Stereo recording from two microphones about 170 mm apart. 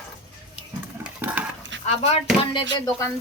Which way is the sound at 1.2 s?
10° right (ahead or behind).